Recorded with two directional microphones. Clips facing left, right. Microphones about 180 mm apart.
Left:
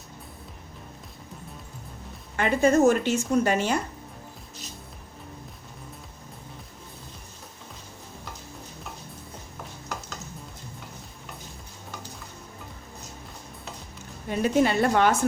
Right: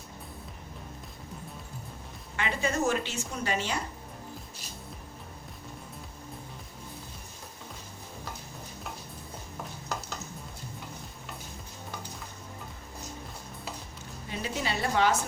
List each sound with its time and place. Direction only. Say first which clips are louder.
2.3 s speech: left 10 dB; 45° left (ahead or behind)
14.3 s speech: left 11 dB; 50° left (ahead or behind)